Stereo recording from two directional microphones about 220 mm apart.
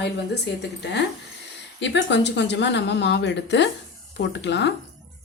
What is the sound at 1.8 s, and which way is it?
A woman's voice, 50° left (ahead or behind).